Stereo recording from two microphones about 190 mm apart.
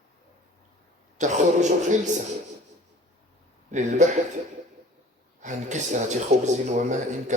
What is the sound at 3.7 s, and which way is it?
Speech, 40° right (ahead or behind).